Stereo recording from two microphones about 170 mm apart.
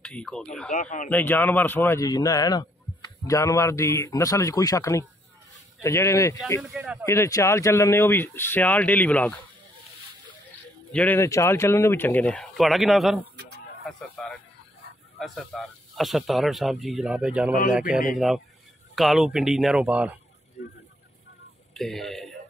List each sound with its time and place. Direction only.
0.0 s speech: 5° left (ahead or behind)
0.7 s speech: 50° left (ahead or behind)
1.1 s a man's voice: 10° left (ahead or behind)
6.7 s speech: 5° right (ahead or behind)
7.1 s speech: 15° left (ahead or behind)
10.9 s a man's voice: 10° left (ahead or behind); by 20.2 s 5° right (ahead or behind)
21.7 s speech: centre (ahead or behind)